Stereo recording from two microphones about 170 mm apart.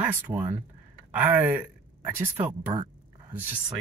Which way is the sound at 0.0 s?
15° right (ahead or behind).